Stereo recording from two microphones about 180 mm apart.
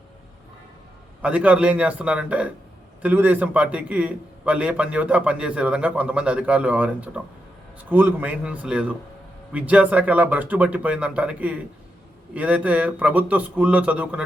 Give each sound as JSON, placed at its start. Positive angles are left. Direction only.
{"t": 1.2, "sound": "a man's voice", "side_deg": -5}